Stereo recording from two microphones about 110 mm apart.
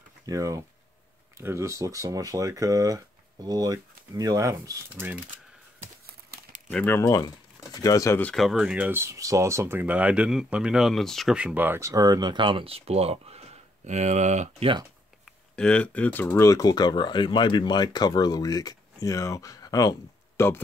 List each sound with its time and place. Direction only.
0.3 s speech: 30° right (ahead or behind)
6.7 s speech: 20° left (ahead or behind)
7.7 s speech: 35° left (ahead or behind)
8.4 s speech: 5° right (ahead or behind)
11.3 s speech: 15° right (ahead or behind)
11.8 s speech: 30° right (ahead or behind); by 14.7 s 90° right
15.2 s speech: 10° left (ahead or behind); by 20.4 s 35° left (ahead or behind)